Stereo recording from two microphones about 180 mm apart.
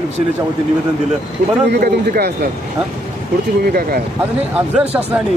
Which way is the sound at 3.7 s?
55° right (ahead or behind).